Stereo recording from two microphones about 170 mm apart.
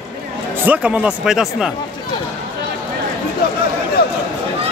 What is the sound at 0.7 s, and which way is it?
Speech, 10° right (ahead or behind).